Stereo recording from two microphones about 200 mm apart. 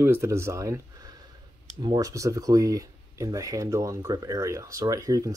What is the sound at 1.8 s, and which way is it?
Speech, 20° right (ahead or behind).